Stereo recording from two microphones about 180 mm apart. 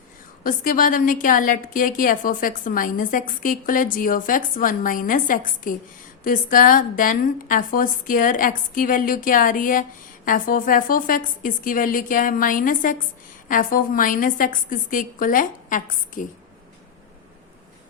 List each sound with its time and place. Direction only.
0.4 s a woman's voice: 50° left (ahead or behind)